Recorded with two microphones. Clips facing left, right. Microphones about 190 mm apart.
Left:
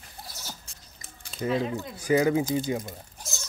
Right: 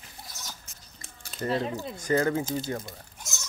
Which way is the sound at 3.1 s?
35° left (ahead or behind).